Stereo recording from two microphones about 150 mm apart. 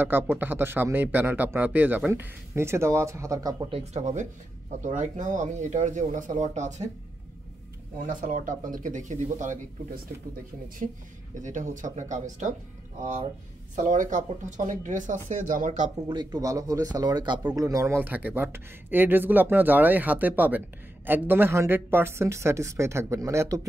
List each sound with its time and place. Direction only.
0.0 s speech: 15° right (ahead or behind)
3.7 s speech: 50° right (ahead or behind)
8.1 s speech: 60° right (ahead or behind)
11.4 s speech: 55° right (ahead or behind)
13.7 s speech: 60° right (ahead or behind)
16.1 s speech: 30° right (ahead or behind)